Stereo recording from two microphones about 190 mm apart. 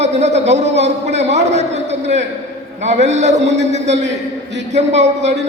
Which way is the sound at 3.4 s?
65° right (ahead or behind).